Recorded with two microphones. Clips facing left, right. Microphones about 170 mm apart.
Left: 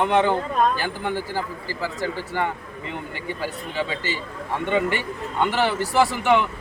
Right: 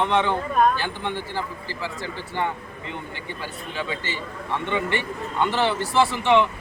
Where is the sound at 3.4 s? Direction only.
40° left (ahead or behind).